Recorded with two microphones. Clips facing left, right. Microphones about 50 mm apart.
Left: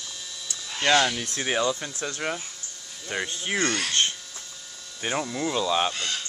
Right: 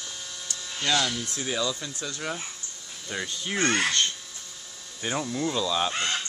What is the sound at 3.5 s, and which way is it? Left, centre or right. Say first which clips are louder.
Speech: right 2 dB; right.